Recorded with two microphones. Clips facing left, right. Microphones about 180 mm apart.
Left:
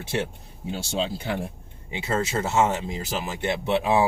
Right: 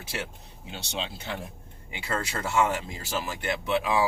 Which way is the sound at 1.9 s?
25° left (ahead or behind).